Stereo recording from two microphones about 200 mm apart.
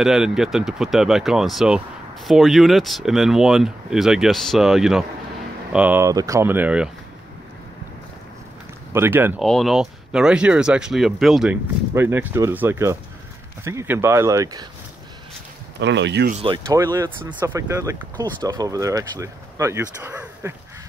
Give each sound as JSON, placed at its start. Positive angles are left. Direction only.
{"t": 0.0, "sound": "speech", "side_deg": 0}
{"t": 8.9, "sound": "speech", "side_deg": -10}
{"t": 9.4, "sound": "speech", "side_deg": 0}
{"t": 15.8, "sound": "speech", "side_deg": -60}
{"t": 16.4, "sound": "speech", "side_deg": -20}